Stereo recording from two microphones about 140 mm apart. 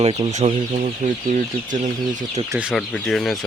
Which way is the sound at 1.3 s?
60° right (ahead or behind).